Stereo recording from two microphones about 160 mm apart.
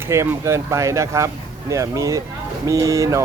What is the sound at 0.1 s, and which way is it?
Speech, 20° right (ahead or behind).